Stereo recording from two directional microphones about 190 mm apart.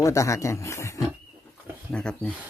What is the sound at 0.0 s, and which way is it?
Speech, 15° left (ahead or behind).